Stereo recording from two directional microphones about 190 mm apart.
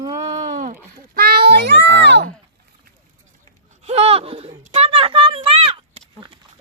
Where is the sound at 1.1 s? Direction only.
50° right (ahead or behind).